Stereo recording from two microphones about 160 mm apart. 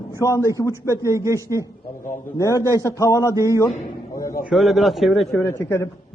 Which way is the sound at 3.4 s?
20° right (ahead or behind).